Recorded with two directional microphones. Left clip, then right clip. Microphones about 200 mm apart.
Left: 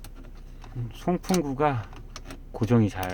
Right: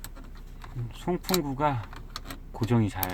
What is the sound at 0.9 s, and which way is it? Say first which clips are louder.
Speech: left 2 dB; 20° left (ahead or behind).